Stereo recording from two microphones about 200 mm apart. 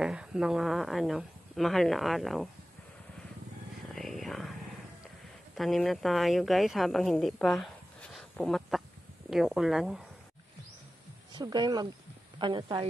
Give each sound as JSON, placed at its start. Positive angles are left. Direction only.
{"t": 0.0, "sound": "a woman's voice", "side_deg": -5}
{"t": 3.9, "sound": "whispering", "side_deg": 0}
{"t": 5.5, "sound": "a woman's voice", "side_deg": 0}
{"t": 11.3, "sound": "speech", "side_deg": -20}